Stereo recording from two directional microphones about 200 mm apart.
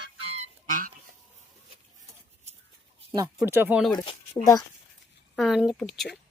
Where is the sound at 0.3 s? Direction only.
40° right (ahead or behind).